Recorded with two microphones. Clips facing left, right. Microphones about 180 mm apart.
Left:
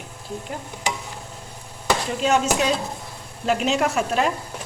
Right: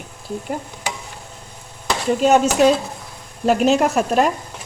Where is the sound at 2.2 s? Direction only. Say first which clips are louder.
Right 8 dB; 50° right (ahead or behind).